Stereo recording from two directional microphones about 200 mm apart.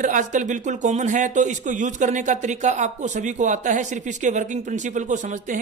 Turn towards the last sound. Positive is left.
turn(degrees=-40)  # may be behind; listen again after turning